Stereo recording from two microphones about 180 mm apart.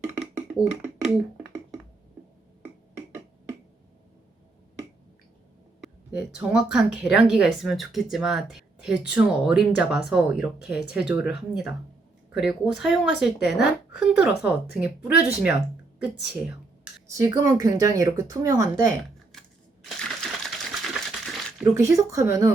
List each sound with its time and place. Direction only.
0.1 s a sound: 10° right (ahead or behind)
6.5 s speech: 5° right (ahead or behind)
17.1 s speech: 15° right (ahead or behind)
19.3 s typewriter: centre (ahead or behind)
21.6 s speech: 15° right (ahead or behind)